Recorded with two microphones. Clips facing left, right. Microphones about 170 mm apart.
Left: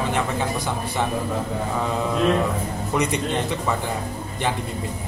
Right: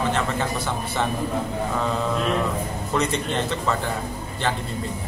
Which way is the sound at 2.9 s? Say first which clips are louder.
Left 1 dB; 15° left (ahead or behind).